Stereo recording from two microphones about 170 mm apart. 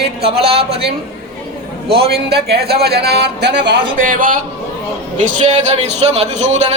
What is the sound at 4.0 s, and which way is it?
Speech, 55° right (ahead or behind).